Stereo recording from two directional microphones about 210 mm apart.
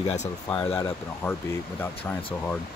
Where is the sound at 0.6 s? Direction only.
10° left (ahead or behind).